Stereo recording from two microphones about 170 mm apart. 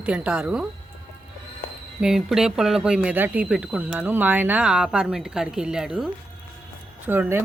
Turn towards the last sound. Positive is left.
turn(degrees=-10)  # may be behind; listen again after turning